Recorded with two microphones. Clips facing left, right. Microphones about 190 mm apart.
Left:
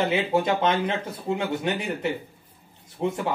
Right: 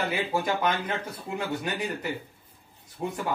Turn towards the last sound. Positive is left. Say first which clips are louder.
# left 4 dB
turn(degrees=25)  # may be behind; listen again after turning